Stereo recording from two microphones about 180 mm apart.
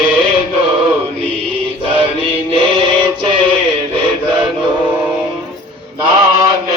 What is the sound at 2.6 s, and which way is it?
Music, 25° right (ahead or behind).